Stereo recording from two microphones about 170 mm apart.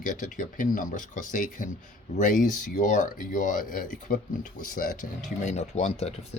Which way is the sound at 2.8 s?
50° left (ahead or behind).